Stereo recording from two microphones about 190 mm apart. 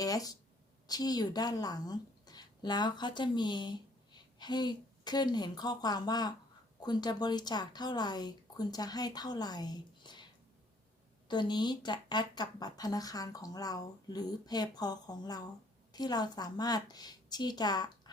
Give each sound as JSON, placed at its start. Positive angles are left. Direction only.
{"t": 0.0, "sound": "a sound", "side_deg": 20}
{"t": 0.9, "sound": "a woman's voice", "side_deg": 20}
{"t": 11.3, "sound": "speech", "side_deg": 25}